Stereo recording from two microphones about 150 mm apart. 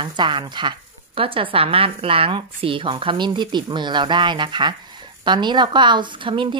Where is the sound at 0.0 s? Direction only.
30° right (ahead or behind).